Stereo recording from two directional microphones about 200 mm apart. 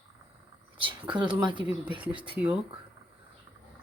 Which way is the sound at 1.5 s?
5° right (ahead or behind).